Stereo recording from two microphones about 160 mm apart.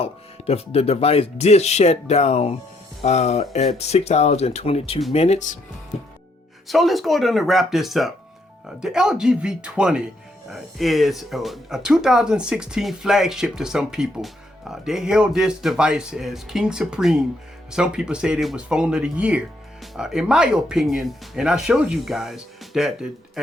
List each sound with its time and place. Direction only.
0.0 s speech: 40° left (ahead or behind)
6.7 s speech: centre (ahead or behind)